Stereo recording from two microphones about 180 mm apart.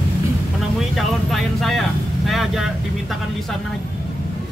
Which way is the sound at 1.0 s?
Centre (ahead or behind).